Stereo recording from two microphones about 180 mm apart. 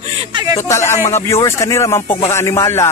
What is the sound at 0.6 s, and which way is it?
Speech, 15° left (ahead or behind).